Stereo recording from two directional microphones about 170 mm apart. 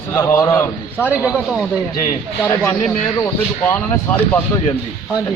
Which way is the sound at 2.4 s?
15° left (ahead or behind).